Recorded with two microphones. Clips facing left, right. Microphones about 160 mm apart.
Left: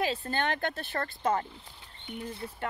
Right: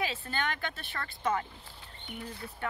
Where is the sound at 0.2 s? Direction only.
40° left (ahead or behind).